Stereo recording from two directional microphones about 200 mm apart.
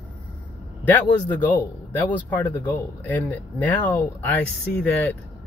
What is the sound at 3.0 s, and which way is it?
Speech, 10° left (ahead or behind).